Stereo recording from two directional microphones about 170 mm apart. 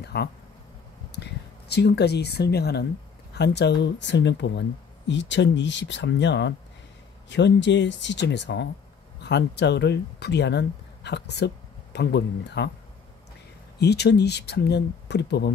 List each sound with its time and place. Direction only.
0.0 s speech: 75° left (ahead or behind)
3.3 s speech: 90° left
13.7 s speech: 75° left (ahead or behind)